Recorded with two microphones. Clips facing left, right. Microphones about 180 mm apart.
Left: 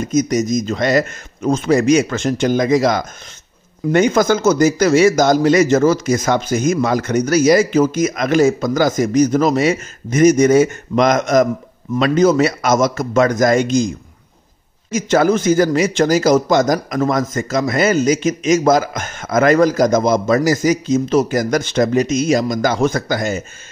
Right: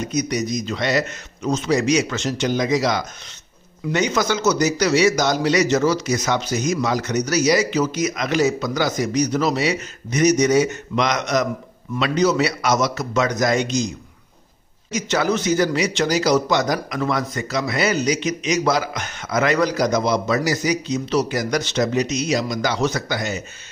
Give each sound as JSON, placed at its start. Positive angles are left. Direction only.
{"t": 0.0, "sound": "a man's voice", "side_deg": 45}